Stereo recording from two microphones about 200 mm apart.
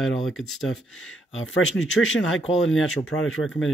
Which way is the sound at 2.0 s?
80° left.